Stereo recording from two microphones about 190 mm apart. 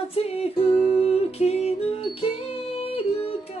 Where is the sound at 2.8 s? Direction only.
30° left (ahead or behind).